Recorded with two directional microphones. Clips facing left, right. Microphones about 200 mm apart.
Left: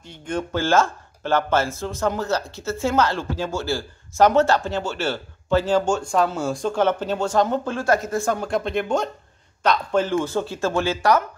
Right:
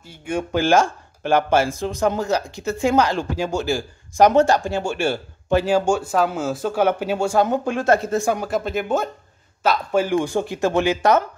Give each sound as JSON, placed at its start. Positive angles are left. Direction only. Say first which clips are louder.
{"t": 0.1, "sound": "speech", "louder": "right 3 dB", "side_deg": -10}
{"t": 8.5, "sound": "speech", "louder": "right 1 dB", "side_deg": -5}